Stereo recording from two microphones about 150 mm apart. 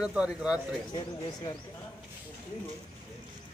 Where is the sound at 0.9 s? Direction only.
30° left (ahead or behind).